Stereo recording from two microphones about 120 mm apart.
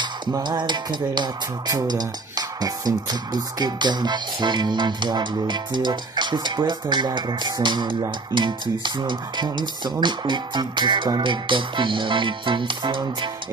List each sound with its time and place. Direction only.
0.4 s speech: 40° right (ahead or behind)